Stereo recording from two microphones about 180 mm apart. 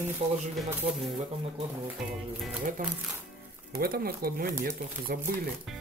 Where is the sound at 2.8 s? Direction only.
45° right (ahead or behind).